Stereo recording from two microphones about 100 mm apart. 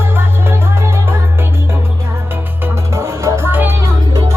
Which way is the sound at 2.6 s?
30° right (ahead or behind).